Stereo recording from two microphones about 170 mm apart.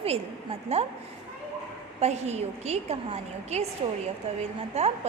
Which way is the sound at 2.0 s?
40° right (ahead or behind).